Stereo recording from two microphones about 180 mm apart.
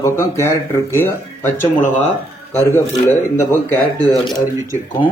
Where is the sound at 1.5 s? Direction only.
45° left (ahead or behind).